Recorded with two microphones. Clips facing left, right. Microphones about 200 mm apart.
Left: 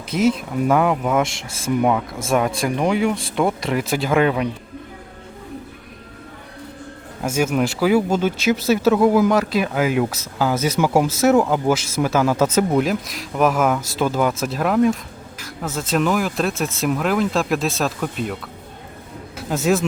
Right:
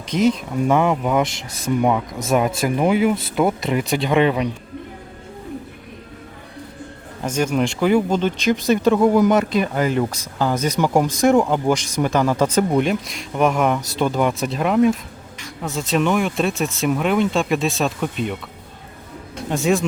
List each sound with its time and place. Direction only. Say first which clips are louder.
0.1 s speech: right 1 dB; 5° left (ahead or behind)
1.5 s speech: even; 20° right (ahead or behind)
1.8 s speech: even; centre (ahead or behind)
7.2 s speech: even; 5° left (ahead or behind)
19.4 s a man's voice: even; centre (ahead or behind)